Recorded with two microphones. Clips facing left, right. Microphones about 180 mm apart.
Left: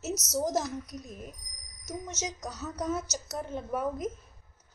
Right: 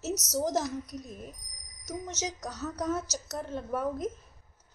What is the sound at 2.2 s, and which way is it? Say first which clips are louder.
A woman's voice: right 1 dB; 10° left (ahead or behind).